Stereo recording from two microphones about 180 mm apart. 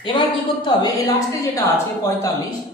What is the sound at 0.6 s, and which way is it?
A woman's voice, 25° left (ahead or behind).